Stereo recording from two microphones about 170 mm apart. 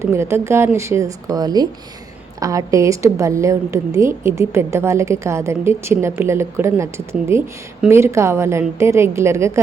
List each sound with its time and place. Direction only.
0.0 s a woman's voice: 15° right (ahead or behind)